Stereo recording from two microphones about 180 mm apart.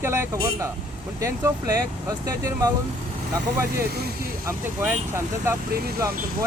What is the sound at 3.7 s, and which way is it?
Speech, 60° right (ahead or behind).